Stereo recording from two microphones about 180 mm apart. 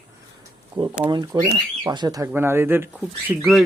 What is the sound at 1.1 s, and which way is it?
Speech, 20° right (ahead or behind).